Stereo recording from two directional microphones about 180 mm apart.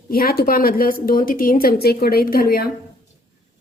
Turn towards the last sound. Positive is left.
turn(degrees=55)  # may be behind; listen again after turning